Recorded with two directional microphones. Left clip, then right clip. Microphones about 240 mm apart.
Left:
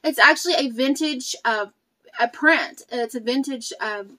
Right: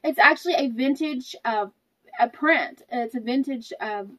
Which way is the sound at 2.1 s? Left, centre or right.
Centre.